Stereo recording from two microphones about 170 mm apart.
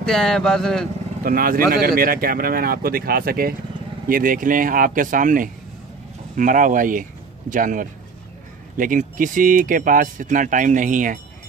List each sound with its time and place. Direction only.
0.0 s speech: 5° left (ahead or behind)
1.2 s speech: 55° right (ahead or behind)